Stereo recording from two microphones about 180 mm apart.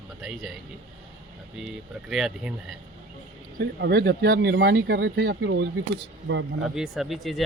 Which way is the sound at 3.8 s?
65° right (ahead or behind).